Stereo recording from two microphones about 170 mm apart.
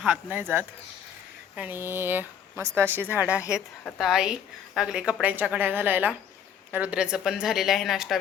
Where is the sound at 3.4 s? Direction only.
15° left (ahead or behind).